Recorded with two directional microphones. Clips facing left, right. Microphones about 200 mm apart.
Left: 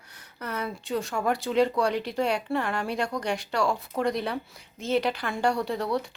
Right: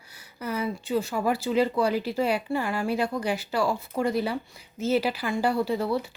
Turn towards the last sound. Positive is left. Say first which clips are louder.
# right 2 dB
turn(degrees=-5)  # may be behind; listen again after turning